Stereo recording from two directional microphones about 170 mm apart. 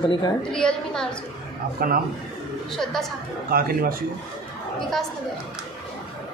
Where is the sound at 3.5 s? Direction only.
60° right (ahead or behind).